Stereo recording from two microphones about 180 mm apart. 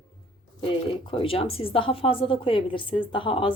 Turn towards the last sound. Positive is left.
turn(degrees=30)  # may be behind; listen again after turning